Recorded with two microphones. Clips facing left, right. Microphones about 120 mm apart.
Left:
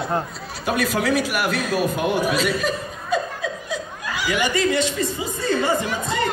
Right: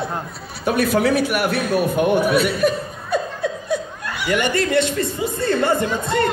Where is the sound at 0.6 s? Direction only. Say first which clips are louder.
Right 4 dB; 55° right (ahead or behind).